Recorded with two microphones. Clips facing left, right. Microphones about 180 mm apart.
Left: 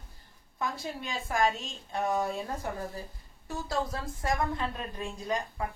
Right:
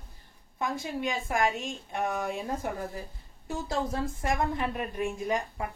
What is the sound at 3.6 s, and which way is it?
A woman's voice, 20° right (ahead or behind).